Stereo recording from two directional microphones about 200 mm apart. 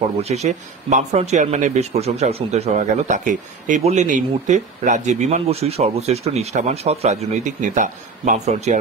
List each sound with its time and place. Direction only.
0.2 s a man's voice: 35° right (ahead or behind)